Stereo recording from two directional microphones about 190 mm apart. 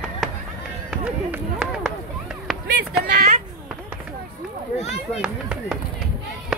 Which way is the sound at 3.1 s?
40° right (ahead or behind).